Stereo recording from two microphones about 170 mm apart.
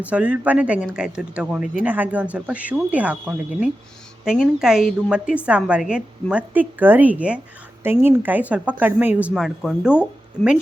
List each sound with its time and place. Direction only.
0.0 s a woman's voice: 10° right (ahead or behind)